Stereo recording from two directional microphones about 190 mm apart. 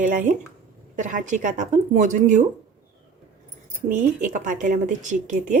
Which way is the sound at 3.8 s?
40° right (ahead or behind).